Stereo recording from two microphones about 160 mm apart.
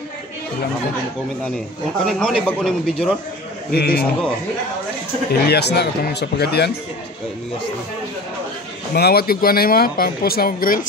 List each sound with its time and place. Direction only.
2.0 s a man's voice: 5° left (ahead or behind)
3.7 s speech: 75° left (ahead or behind)
5.5 s speech: 90° left
8.9 s speech: 75° left (ahead or behind); by 10.9 s 60° left (ahead or behind)